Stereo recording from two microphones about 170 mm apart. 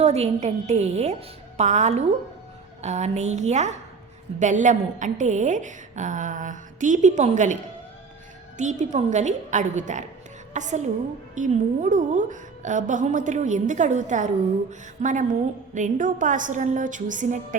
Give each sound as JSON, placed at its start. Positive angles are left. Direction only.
{"t": 0.0, "sound": "a woman's voice", "side_deg": -40}